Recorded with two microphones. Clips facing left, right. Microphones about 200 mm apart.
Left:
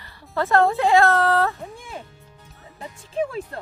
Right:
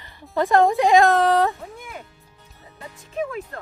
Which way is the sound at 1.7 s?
30° left (ahead or behind).